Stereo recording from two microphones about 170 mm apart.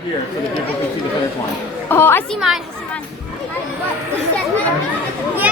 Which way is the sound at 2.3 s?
Centre (ahead or behind).